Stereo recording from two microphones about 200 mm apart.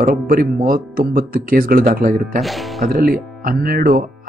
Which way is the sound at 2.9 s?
45° right (ahead or behind).